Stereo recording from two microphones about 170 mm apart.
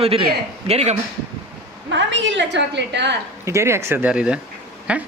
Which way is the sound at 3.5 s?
15° right (ahead or behind).